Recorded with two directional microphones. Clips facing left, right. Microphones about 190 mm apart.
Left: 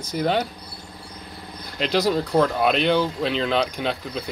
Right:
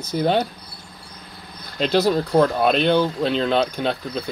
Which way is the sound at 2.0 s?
Centre (ahead or behind).